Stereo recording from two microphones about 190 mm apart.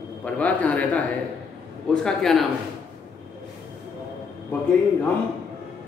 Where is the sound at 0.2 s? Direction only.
5° left (ahead or behind).